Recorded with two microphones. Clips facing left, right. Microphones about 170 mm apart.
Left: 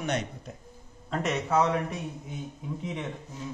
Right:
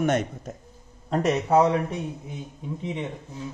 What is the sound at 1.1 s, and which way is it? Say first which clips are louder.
Speech: right 6 dB; 35° right (ahead or behind).